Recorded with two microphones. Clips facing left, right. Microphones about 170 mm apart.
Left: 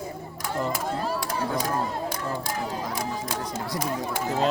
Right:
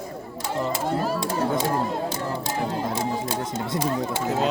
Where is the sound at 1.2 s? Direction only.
25° right (ahead or behind).